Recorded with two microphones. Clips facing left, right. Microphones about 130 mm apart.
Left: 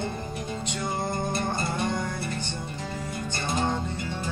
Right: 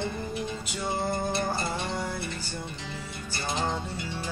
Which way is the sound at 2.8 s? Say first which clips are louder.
Left 5 dB; 45° left (ahead or behind).